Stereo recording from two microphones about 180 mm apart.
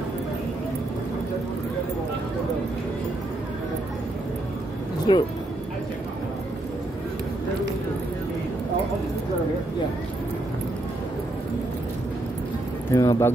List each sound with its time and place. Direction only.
5.1 s speech: 25° left (ahead or behind)
12.9 s speech: 15° left (ahead or behind)